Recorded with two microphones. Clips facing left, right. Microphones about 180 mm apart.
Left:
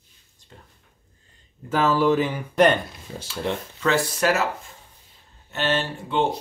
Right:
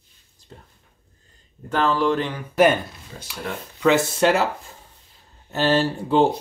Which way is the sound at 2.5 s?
5° right (ahead or behind).